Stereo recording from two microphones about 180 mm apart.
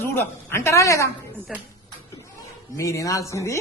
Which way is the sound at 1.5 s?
Centre (ahead or behind).